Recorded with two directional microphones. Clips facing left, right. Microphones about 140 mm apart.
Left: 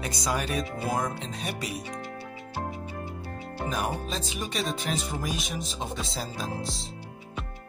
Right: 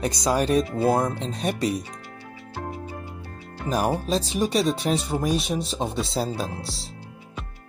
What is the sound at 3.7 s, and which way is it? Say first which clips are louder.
Speech: right 9 dB; 40° right (ahead or behind).